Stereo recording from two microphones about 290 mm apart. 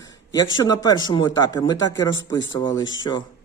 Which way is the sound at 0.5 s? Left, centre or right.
Centre.